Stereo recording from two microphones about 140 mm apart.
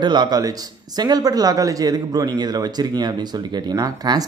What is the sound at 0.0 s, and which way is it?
Speech, 30° right (ahead or behind).